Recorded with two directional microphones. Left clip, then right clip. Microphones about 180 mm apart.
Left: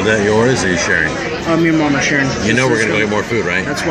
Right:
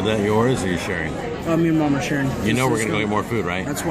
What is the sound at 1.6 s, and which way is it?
Speech, 45° right (ahead or behind).